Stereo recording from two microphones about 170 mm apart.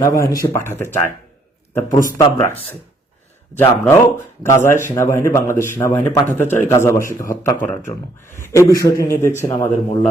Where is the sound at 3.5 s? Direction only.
10° left (ahead or behind).